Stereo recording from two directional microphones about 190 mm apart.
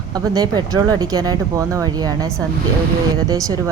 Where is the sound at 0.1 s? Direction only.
20° right (ahead or behind).